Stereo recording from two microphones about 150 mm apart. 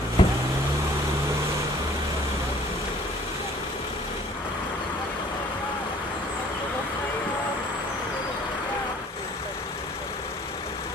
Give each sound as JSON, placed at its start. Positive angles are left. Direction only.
{"t": 0.2, "sound": "vehicle", "side_deg": 35}